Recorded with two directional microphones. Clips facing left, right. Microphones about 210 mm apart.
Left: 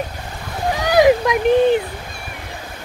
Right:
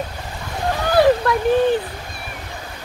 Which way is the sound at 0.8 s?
15° left (ahead or behind).